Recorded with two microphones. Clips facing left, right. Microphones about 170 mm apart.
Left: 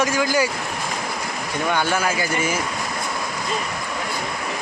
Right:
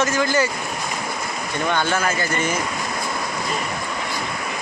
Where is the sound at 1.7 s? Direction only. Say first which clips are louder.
Even; 10° left (ahead or behind).